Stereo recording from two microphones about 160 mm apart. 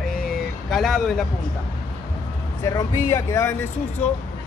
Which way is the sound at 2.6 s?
20° left (ahead or behind).